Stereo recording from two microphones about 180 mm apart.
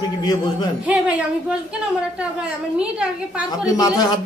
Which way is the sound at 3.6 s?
20° left (ahead or behind).